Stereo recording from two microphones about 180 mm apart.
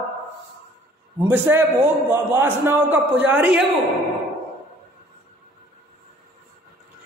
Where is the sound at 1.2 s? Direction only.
10° right (ahead or behind).